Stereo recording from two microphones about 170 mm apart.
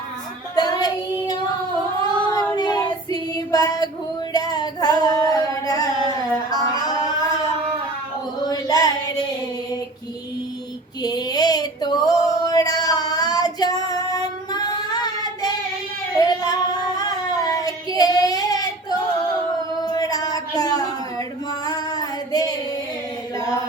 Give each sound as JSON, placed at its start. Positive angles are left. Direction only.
{"t": 0.5, "sound": "child singing", "side_deg": 25}
{"t": 2.0, "sound": "child singing", "side_deg": 25}
{"t": 4.3, "sound": "female singing", "side_deg": 25}
{"t": 6.5, "sound": "music", "side_deg": 25}
{"t": 8.4, "sound": "a sound", "side_deg": 20}
{"t": 11.0, "sound": "female singing", "side_deg": 25}
{"t": 16.1, "sound": "singing", "side_deg": 25}
{"t": 17.0, "sound": "child singing", "side_deg": 20}
{"t": 19.8, "sound": "a sound", "side_deg": 25}